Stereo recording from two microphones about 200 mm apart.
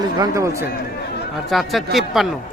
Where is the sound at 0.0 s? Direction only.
20° right (ahead or behind).